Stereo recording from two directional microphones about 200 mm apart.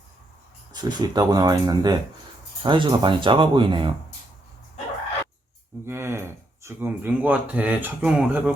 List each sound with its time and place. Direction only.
0.7 s speech: 20° right (ahead or behind)
5.8 s speech: 10° right (ahead or behind)